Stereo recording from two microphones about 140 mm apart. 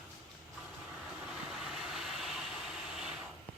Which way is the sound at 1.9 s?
Centre (ahead or behind).